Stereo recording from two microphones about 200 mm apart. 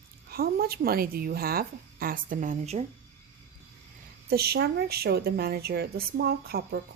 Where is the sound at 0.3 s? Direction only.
50° right (ahead or behind).